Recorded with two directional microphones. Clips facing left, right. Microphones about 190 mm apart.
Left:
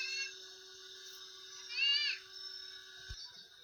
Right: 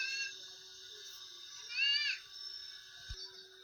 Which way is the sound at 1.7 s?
50° right (ahead or behind).